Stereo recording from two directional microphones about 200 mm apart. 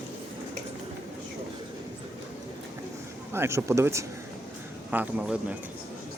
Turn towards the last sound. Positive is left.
turn(degrees=-5)  # may be behind; listen again after turning